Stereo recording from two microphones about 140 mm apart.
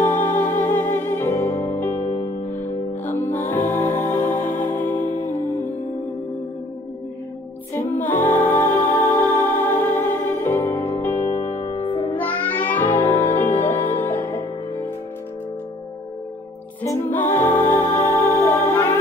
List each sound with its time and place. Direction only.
0.0 s music: 10° left (ahead or behind)
7.7 s music: 15° left (ahead or behind)
11.7 s music: 40° left (ahead or behind)
12.2 s music: 10° left (ahead or behind)
16.8 s music: 15° left (ahead or behind)